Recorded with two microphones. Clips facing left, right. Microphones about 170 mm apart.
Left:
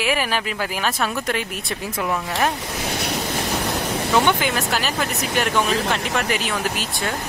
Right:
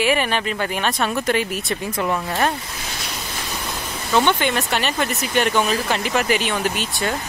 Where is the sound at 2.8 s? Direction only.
60° left (ahead or behind).